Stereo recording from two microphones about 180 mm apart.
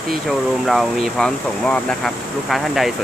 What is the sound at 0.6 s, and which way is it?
Speech, centre (ahead or behind).